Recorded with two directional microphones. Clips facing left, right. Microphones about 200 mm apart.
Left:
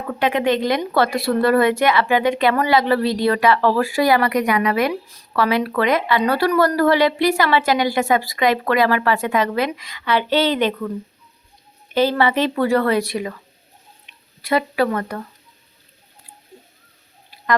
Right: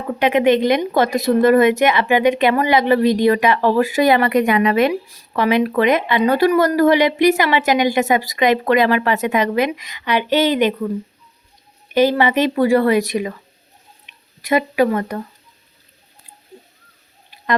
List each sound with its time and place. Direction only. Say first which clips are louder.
0.1 s a woman's voice: right 4 dB; 20° right (ahead or behind)
11.9 s speech: right 3 dB; 15° right (ahead or behind)